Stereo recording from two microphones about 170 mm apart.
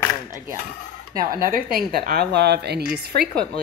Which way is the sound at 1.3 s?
55° right (ahead or behind).